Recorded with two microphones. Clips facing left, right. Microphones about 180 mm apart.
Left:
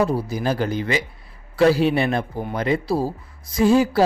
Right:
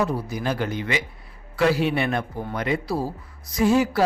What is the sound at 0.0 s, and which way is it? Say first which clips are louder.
Speech: left 4 dB; 30° left (ahead or behind).